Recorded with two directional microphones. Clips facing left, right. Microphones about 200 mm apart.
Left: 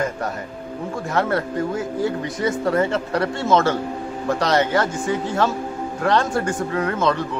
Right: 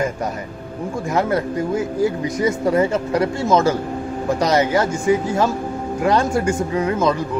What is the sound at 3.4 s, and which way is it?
Speech, centre (ahead or behind).